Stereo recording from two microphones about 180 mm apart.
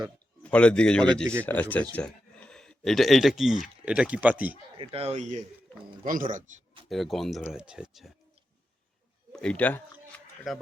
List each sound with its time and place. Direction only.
0.4 s a man's voice: 5° left (ahead or behind)
4.8 s a man's voice: 30° right (ahead or behind)
6.8 s speech: centre (ahead or behind)
9.3 s speech: 5° left (ahead or behind)